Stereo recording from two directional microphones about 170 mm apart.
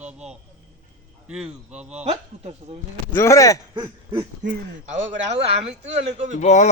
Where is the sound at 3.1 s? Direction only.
15° left (ahead or behind).